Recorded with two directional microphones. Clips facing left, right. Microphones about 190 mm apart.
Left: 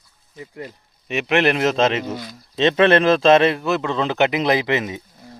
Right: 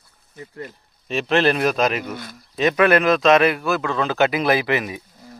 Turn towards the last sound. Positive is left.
turn(degrees=25)  # may be behind; listen again after turning